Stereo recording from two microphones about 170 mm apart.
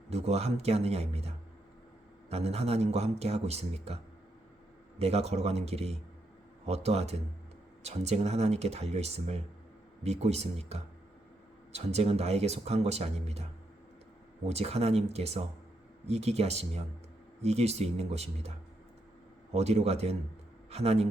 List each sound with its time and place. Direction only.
0.1 s speech: 40° right (ahead or behind)
19.5 s a man's voice: 40° right (ahead or behind)